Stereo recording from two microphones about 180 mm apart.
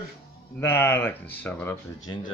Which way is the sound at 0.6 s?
15° left (ahead or behind).